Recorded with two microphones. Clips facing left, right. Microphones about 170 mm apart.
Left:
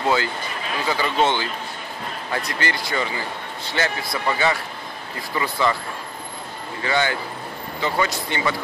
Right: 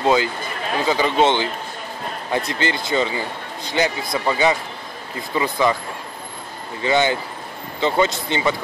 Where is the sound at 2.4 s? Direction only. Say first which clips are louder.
Right 3 dB; 20° right (ahead or behind).